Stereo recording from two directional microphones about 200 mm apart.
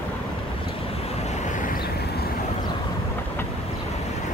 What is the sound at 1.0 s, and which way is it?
Vehicle, 35° left (ahead or behind).